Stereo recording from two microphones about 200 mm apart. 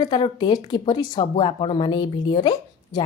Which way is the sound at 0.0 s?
20° left (ahead or behind).